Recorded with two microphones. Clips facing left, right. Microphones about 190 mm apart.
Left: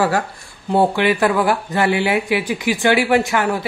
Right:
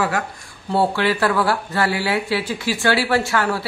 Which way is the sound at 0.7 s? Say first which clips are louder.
Left 3 dB; 15° left (ahead or behind).